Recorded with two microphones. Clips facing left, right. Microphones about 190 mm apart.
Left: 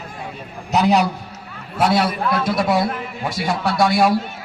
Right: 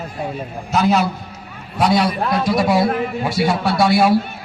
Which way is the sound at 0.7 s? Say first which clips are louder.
Even; 15° left (ahead or behind).